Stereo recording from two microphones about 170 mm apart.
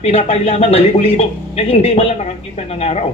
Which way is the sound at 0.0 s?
40° left (ahead or behind).